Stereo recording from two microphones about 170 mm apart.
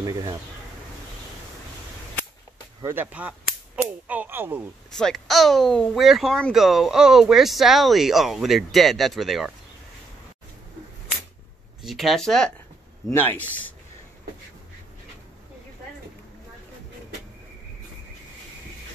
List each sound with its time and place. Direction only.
0.0 s speech: 20° right (ahead or behind)
2.8 s cap gun: 10° right (ahead or behind)
4.9 s speech: centre (ahead or behind)
11.8 s speech: centre (ahead or behind)